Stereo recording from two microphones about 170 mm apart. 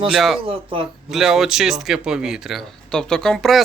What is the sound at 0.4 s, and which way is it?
Speech, 35° right (ahead or behind).